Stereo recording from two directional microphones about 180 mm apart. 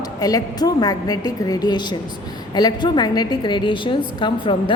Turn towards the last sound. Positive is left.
turn(degrees=25)  # may be behind; listen again after turning